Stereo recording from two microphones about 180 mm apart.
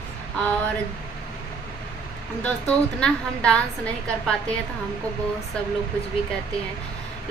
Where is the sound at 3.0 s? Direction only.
5° left (ahead or behind).